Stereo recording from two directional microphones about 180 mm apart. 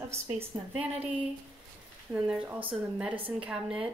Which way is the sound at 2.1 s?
10° right (ahead or behind).